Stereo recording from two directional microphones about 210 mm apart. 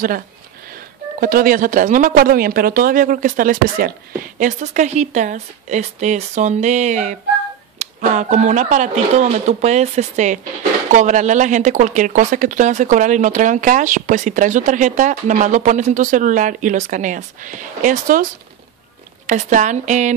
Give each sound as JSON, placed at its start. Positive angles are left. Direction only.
{"t": 1.2, "sound": "speech", "side_deg": -45}